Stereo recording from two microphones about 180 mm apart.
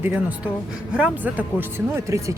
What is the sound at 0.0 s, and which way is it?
Speech, 10° right (ahead or behind).